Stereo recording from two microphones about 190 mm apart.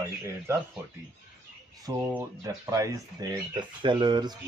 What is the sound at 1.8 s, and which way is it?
Speech, 15° right (ahead or behind).